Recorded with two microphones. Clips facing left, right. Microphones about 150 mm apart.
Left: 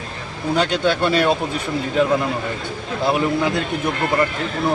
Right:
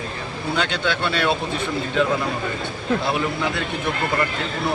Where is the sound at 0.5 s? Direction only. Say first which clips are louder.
Left 5 dB; 40° left (ahead or behind).